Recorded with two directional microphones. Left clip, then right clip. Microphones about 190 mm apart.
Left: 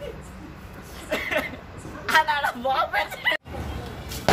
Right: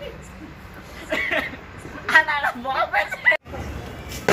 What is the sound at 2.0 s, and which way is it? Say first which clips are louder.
Chatter: right 3 dB; 60° left (ahead or behind).